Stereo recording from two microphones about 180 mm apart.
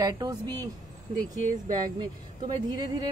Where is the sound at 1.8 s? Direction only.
25° right (ahead or behind).